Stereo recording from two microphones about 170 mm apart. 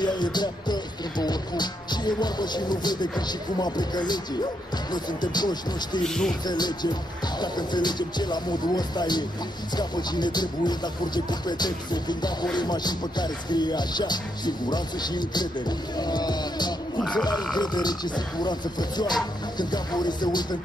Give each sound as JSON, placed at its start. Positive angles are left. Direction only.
{"t": 0.0, "sound": "speech", "side_deg": 25}
{"t": 6.0, "sound": "speech", "side_deg": 5}
{"t": 6.4, "sound": "speech", "side_deg": 25}